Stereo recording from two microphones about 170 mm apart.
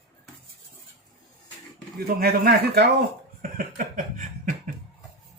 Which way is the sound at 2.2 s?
65° right (ahead or behind).